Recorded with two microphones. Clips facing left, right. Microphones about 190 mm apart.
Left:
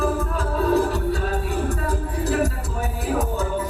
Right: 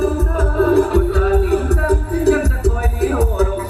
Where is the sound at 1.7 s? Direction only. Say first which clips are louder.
Right 8 dB; 65° right (ahead or behind).